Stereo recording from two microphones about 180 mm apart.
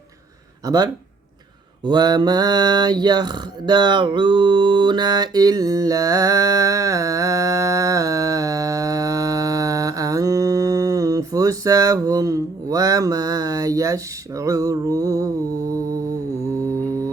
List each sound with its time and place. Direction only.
0.6 s speech: 20° right (ahead or behind)
1.8 s mantra: 25° right (ahead or behind)